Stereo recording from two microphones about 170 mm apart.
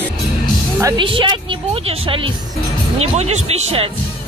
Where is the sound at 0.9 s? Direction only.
30° right (ahead or behind).